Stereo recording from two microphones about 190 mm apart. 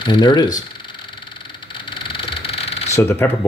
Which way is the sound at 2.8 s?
15° left (ahead or behind).